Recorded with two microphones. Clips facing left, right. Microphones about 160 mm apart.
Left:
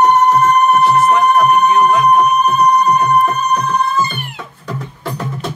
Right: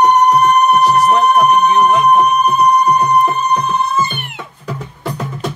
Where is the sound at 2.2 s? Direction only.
10° right (ahead or behind).